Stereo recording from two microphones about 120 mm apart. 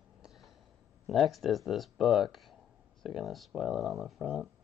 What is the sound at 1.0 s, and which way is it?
Speech, centre (ahead or behind).